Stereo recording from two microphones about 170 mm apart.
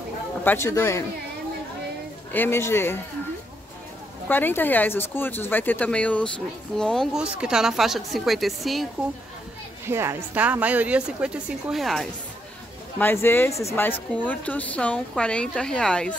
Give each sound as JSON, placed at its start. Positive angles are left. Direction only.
{"t": 0.4, "sound": "a woman's voice", "side_deg": 15}
{"t": 2.3, "sound": "a woman's voice", "side_deg": 15}
{"t": 4.3, "sound": "a woman's voice", "side_deg": 10}
{"t": 9.8, "sound": "speech", "side_deg": -15}
{"t": 13.0, "sound": "a woman's voice", "side_deg": 15}